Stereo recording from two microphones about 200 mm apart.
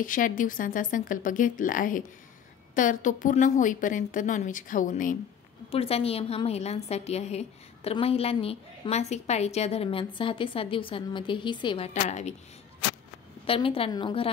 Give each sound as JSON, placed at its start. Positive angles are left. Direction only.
{"t": 0.0, "sound": "a woman's voice", "side_deg": 40}
{"t": 5.7, "sound": "a woman's voice", "side_deg": 30}
{"t": 11.9, "sound": "a woman's voice", "side_deg": 35}
{"t": 13.5, "sound": "a woman's voice", "side_deg": 25}